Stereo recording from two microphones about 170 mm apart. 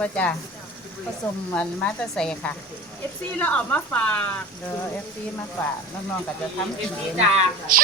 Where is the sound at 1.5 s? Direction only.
10° left (ahead or behind).